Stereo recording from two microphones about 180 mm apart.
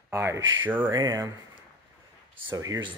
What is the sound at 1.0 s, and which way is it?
Speech, 25° right (ahead or behind).